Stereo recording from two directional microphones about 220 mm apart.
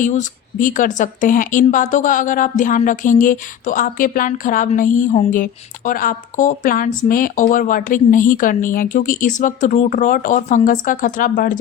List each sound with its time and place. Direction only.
0.0 s speech: 35° left (ahead or behind)